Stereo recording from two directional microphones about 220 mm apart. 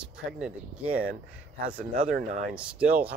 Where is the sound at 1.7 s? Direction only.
40° right (ahead or behind).